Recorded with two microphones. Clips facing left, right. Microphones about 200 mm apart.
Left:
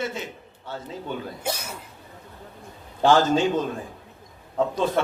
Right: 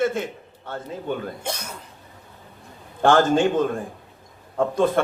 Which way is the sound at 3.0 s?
55° right (ahead or behind).